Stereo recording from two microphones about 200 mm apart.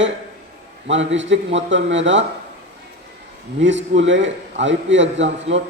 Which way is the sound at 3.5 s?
65° right (ahead or behind).